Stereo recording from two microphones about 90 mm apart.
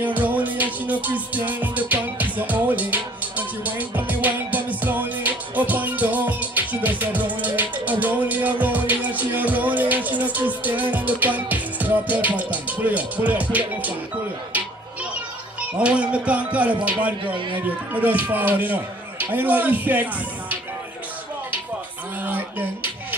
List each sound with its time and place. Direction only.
0.0 s music: 20° right (ahead or behind)
15.8 s music: 15° right (ahead or behind)
17.9 s a man's voice: 20° right (ahead or behind)
22.2 s a sound: 20° right (ahead or behind)